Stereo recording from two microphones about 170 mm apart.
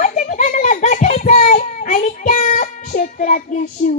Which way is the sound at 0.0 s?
50° left (ahead or behind).